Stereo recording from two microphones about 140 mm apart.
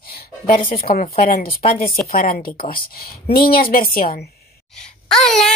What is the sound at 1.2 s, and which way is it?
A woman's voice, 90° left.